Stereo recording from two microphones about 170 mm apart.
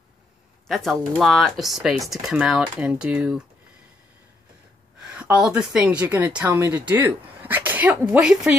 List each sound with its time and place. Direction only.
0.7 s speech: centre (ahead or behind)
4.9 s a woman's voice: 5° right (ahead or behind)